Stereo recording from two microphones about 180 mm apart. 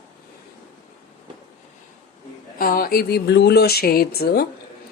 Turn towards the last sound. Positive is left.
turn(degrees=60)  # may be behind; listen again after turning